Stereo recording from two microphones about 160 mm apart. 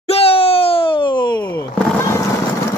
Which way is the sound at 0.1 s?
35° left (ahead or behind).